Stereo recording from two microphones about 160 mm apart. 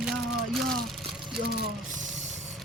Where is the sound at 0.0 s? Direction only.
Centre (ahead or behind).